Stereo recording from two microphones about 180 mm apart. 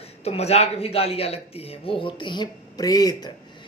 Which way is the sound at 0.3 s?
35° left (ahead or behind).